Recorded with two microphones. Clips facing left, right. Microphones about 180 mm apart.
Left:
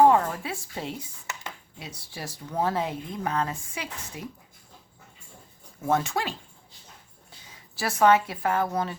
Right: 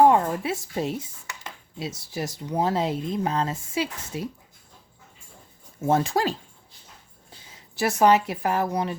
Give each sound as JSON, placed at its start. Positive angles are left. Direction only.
{"t": 0.1, "sound": "speech", "side_deg": -20}
{"t": 2.9, "sound": "speech", "side_deg": -90}
{"t": 3.2, "sound": "speech", "side_deg": -25}
{"t": 5.8, "sound": "speech", "side_deg": -30}
{"t": 7.8, "sound": "speech", "side_deg": -20}